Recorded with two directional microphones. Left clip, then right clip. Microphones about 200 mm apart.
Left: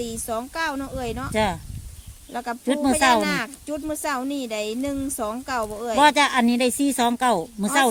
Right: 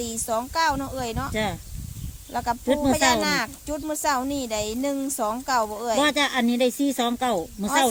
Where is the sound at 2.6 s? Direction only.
40° left (ahead or behind).